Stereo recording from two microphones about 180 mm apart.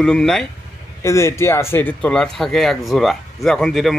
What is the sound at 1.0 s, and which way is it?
A man's voice, 15° left (ahead or behind).